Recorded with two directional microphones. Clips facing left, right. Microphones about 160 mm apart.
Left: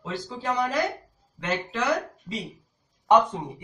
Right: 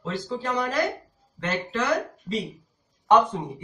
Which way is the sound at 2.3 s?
5° right (ahead or behind).